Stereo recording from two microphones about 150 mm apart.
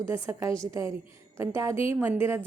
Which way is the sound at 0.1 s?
15° right (ahead or behind).